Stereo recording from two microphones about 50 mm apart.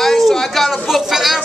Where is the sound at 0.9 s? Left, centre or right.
Centre.